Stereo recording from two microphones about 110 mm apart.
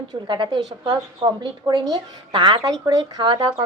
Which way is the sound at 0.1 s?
45° right (ahead or behind).